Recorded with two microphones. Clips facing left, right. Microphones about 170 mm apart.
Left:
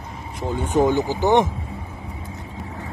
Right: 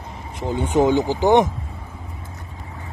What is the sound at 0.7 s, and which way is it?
Speech, 10° right (ahead or behind).